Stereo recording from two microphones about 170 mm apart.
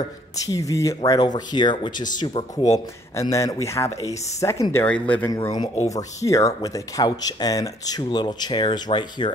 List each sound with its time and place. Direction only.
0.4 s speech: 20° left (ahead or behind)
5.3 s speech: 25° left (ahead or behind)